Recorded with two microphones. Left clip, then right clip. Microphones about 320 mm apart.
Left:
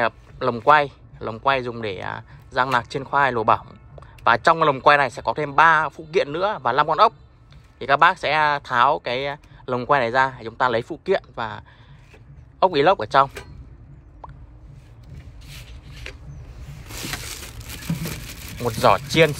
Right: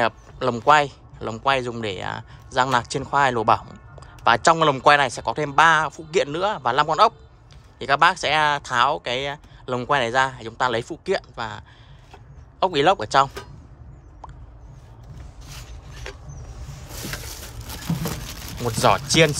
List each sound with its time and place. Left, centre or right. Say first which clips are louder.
0.0 s speech: even; centre
14.2 s plop: left 1 dB; centre
15.9 s a sound: right 1 dB; right
18.6 s speech: left 1 dB; centre